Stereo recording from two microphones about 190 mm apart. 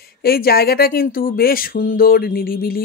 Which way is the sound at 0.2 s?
55° left (ahead or behind).